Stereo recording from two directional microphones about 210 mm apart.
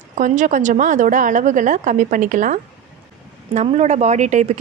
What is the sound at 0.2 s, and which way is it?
A woman's voice, 35° right (ahead or behind).